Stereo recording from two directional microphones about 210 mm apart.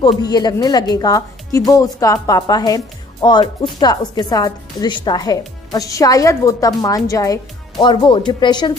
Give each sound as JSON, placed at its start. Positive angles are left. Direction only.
{"t": 0.0, "sound": "a woman's voice", "side_deg": 20}